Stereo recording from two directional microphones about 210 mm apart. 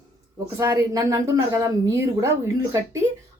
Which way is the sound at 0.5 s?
15° right (ahead or behind).